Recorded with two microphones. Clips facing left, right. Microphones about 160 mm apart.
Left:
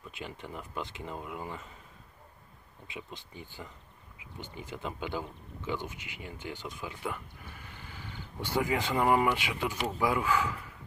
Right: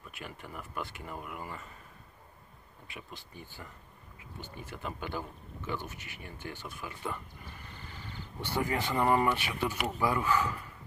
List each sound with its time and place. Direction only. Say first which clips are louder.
0.1 s speech: left 3 dB; 20° left (ahead or behind)
2.9 s speech: left 3 dB; 20° left (ahead or behind)